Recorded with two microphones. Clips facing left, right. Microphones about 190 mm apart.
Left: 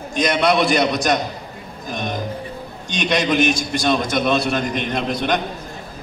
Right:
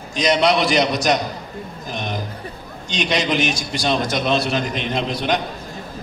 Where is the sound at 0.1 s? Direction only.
55° left (ahead or behind).